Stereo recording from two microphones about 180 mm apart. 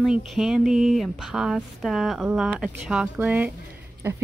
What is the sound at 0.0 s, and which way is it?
A woman's voice, centre (ahead or behind).